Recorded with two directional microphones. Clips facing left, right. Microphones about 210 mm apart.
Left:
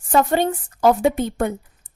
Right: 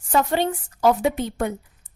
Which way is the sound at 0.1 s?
45° left (ahead or behind).